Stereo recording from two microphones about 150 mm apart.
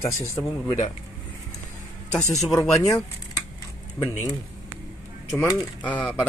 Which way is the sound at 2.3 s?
Centre (ahead or behind).